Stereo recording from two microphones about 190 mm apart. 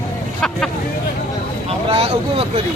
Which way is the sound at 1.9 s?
30° right (ahead or behind).